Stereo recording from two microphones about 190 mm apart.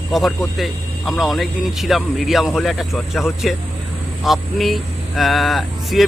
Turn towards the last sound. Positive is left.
turn(degrees=0)  # may be behind; listen again after turning